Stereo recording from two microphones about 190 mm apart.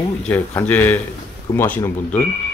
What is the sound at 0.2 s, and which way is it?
Speech, 10° left (ahead or behind).